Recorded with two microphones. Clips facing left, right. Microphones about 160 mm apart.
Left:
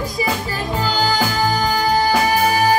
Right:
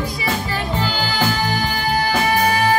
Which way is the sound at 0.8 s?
40° left (ahead or behind).